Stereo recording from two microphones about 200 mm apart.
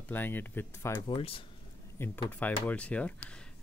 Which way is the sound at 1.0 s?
25° left (ahead or behind).